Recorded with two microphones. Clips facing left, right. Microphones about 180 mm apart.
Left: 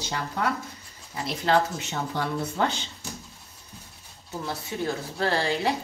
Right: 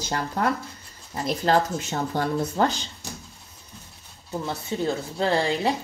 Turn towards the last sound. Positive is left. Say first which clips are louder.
# right 2 dB
turn(degrees=-20)  # may be behind; listen again after turning